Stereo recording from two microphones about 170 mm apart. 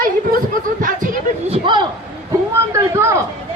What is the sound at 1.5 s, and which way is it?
Speech, 30° right (ahead or behind).